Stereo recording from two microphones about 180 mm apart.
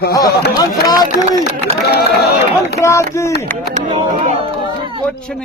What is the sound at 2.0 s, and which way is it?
Speech, 60° left (ahead or behind).